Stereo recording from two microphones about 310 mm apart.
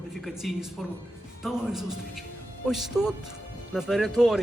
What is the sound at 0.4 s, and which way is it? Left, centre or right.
Speech, centre.